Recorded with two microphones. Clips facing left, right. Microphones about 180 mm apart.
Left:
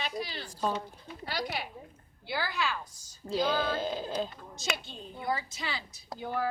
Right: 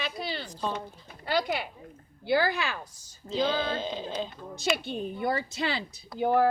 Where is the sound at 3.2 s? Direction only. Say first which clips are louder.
Right 1 dB; 5° left (ahead or behind).